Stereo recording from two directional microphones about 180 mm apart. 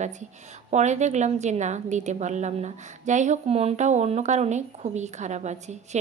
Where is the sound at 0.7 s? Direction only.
40° right (ahead or behind).